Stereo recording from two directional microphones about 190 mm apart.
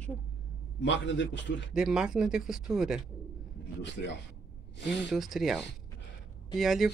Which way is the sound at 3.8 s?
65° left (ahead or behind).